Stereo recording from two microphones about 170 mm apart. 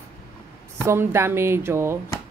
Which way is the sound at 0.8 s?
15° right (ahead or behind).